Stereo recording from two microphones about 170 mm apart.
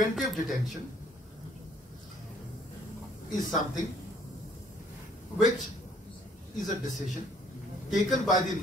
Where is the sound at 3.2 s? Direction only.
50° left (ahead or behind).